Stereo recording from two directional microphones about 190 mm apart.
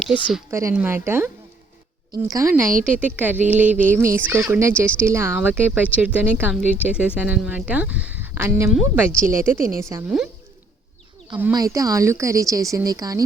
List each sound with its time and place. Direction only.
0.0 s speech: 5° right (ahead or behind)
11.5 s speech: 20° right (ahead or behind)